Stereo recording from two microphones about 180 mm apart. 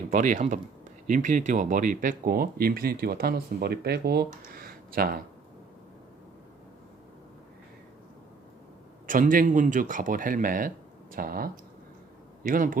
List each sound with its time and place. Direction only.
0.1 s speech: 45° right (ahead or behind)
4.4 s a sound: 55° right (ahead or behind)
9.0 s speech: 50° right (ahead or behind)